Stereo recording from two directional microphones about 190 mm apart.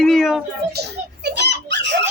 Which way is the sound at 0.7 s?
60° right (ahead or behind).